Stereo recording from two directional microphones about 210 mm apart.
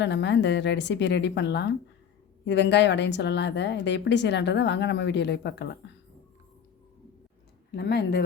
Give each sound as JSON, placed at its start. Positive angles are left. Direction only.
{"t": 0.0, "sound": "a woman's voice", "side_deg": 55}
{"t": 7.8, "sound": "speech", "side_deg": 50}